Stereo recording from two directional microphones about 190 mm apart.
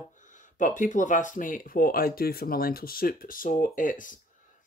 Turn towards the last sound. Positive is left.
turn(degrees=45)  # may be behind; listen again after turning